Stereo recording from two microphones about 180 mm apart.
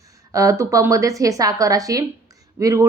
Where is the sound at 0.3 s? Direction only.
15° right (ahead or behind).